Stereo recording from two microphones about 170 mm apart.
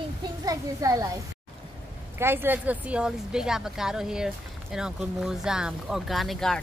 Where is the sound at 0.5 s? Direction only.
20° right (ahead or behind).